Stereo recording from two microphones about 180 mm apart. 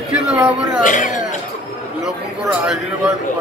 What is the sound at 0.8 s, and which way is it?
Speech, 45° left (ahead or behind).